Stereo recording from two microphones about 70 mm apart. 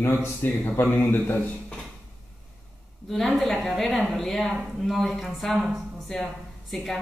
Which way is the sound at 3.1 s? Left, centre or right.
Centre.